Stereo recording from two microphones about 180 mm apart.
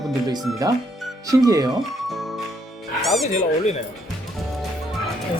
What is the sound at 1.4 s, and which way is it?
Speech, 20° right (ahead or behind).